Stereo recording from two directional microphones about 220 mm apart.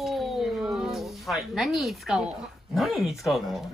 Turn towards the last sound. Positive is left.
turn(degrees=0)  # may be behind; listen again after turning